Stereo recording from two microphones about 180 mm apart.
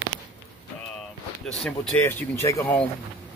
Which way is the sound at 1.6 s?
10° left (ahead or behind).